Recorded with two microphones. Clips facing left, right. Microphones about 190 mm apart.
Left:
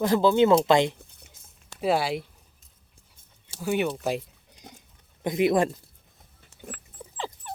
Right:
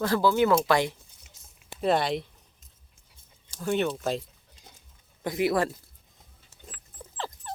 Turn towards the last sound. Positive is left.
turn(degrees=10)  # may be behind; listen again after turning